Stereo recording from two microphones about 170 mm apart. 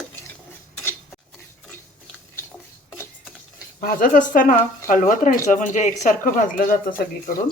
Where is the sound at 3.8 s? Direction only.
55° left (ahead or behind).